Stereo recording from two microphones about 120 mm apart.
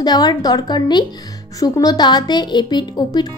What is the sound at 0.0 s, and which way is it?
A woman's voice, 35° left (ahead or behind).